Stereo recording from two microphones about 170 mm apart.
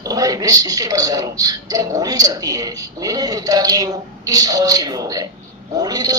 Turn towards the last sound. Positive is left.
turn(degrees=-20)  # may be behind; listen again after turning